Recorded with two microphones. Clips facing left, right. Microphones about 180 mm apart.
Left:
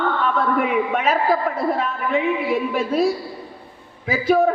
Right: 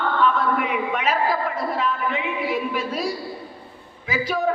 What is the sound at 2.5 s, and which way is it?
Speech, 50° left (ahead or behind).